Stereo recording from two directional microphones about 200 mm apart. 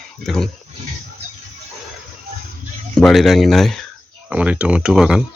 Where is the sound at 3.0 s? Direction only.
Centre (ahead or behind).